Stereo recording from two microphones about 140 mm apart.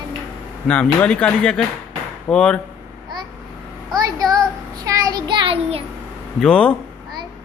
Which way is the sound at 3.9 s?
25° right (ahead or behind).